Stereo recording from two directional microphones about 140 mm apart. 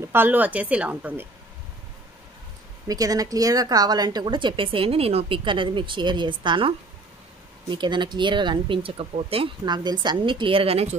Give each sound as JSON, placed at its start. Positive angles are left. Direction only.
{"t": 0.0, "sound": "speech", "side_deg": -15}
{"t": 2.9, "sound": "speech", "side_deg": -25}